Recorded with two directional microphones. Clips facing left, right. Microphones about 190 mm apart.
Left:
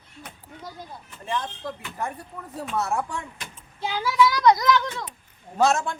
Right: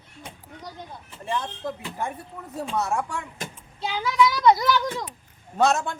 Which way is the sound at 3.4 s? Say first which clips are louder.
Right 6 dB; 45° right (ahead or behind).